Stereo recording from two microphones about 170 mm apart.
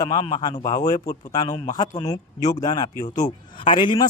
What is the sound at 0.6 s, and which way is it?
Speech, 45° left (ahead or behind).